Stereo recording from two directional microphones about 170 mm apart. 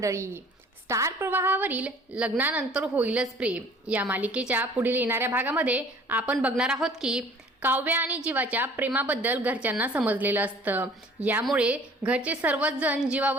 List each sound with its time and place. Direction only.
0.0 s a woman's voice: 15° right (ahead or behind)